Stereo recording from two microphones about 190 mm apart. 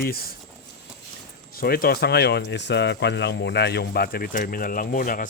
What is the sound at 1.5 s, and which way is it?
Speech, 55° left (ahead or behind).